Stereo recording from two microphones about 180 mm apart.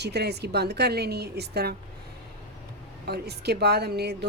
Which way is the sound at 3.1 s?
65° right (ahead or behind).